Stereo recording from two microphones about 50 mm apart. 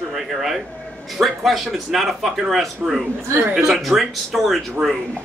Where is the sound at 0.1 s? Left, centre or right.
Centre.